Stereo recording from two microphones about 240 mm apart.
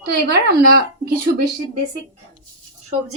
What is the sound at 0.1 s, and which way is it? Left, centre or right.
Speech, right.